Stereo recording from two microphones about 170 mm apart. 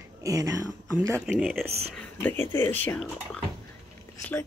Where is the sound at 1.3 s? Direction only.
Centre (ahead or behind).